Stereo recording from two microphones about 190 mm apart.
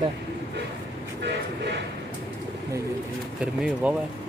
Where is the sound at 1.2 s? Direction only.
65° right (ahead or behind).